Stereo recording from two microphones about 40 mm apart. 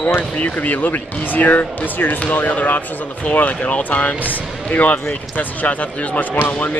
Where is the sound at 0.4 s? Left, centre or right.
Left.